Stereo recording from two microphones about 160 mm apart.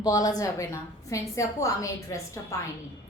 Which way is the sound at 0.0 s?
20° left (ahead or behind).